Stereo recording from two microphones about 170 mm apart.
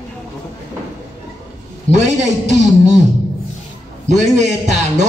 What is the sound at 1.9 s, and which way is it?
Speech, 45° right (ahead or behind).